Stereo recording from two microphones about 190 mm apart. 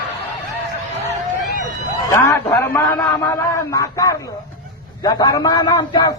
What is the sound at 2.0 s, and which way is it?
A man's voice, 15° left (ahead or behind).